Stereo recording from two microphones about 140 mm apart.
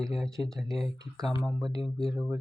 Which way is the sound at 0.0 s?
Centre (ahead or behind).